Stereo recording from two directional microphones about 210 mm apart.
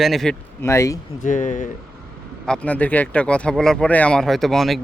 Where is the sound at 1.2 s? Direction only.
35° left (ahead or behind).